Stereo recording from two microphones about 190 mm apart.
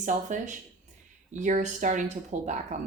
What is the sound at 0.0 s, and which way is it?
Speech, 40° right (ahead or behind).